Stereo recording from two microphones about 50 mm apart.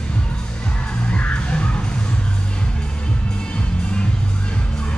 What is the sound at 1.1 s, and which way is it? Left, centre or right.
Music, left.